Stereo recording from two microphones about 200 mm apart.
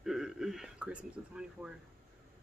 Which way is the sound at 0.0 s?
Centre (ahead or behind).